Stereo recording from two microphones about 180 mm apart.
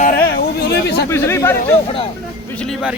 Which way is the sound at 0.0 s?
55° left (ahead or behind).